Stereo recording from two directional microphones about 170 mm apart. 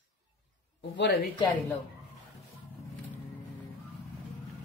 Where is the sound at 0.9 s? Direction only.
90° left.